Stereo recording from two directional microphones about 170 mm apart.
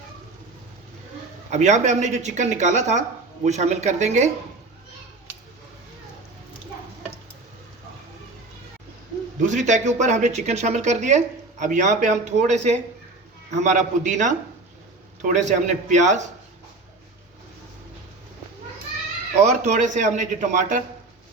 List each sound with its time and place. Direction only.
1.5 s speech: 45° right (ahead or behind)
9.5 s speech: 45° right (ahead or behind)
19.4 s speech: 40° right (ahead or behind)